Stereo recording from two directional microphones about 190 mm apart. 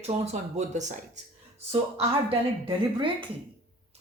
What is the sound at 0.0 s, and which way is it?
Speech, 35° right (ahead or behind).